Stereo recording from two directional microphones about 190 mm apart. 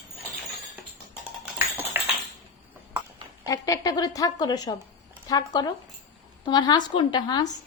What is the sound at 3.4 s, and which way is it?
Speech, 20° left (ahead or behind).